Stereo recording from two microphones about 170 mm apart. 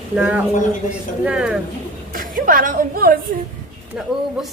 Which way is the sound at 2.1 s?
55° right (ahead or behind).